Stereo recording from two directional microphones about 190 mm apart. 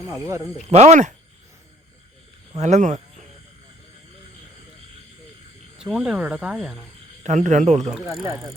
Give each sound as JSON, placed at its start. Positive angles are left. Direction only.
{"t": 0.7, "sound": "a man's voice", "side_deg": -35}
{"t": 2.6, "sound": "speech", "side_deg": -40}
{"t": 5.7, "sound": "speech", "side_deg": -5}
{"t": 7.2, "sound": "a man's voice", "side_deg": -40}
{"t": 8.0, "sound": "speech", "side_deg": -15}